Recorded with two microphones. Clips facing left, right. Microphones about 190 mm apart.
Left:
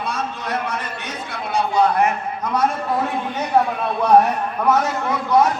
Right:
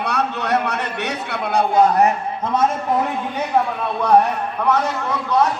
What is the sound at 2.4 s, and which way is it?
Speech, 25° right (ahead or behind).